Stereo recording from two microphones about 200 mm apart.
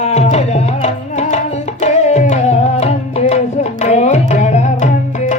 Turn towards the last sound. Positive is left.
turn(degrees=35)  # may be behind; listen again after turning